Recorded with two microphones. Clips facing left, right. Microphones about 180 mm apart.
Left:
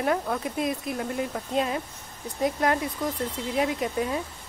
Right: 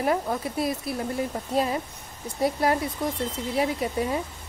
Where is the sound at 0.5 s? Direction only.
40° right (ahead or behind).